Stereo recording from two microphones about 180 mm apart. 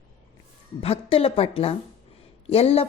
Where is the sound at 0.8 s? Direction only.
30° left (ahead or behind).